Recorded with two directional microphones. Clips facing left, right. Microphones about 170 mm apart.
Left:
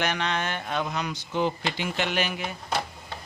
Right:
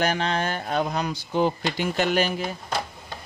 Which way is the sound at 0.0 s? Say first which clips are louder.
Right 4 dB; 35° right (ahead or behind).